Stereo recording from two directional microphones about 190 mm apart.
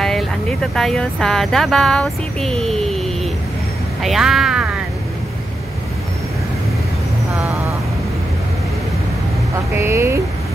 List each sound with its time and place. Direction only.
0.0 s speech: 5° left (ahead or behind)
4.0 s speech: centre (ahead or behind)
9.8 s speech: 15° right (ahead or behind)